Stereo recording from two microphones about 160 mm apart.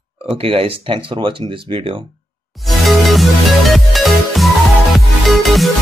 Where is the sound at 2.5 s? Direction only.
Centre (ahead or behind).